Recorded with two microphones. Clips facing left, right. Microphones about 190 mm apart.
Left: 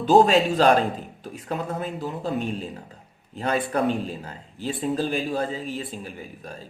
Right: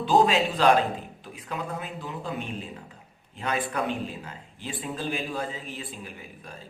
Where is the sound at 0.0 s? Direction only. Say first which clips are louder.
Left 5 dB; 45° left (ahead or behind).